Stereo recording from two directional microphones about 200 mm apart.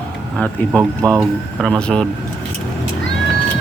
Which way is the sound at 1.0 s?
15° right (ahead or behind).